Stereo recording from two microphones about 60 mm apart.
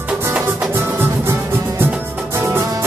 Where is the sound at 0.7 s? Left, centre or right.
Right.